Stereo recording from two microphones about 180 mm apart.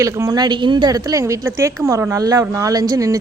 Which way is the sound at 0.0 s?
20° right (ahead or behind).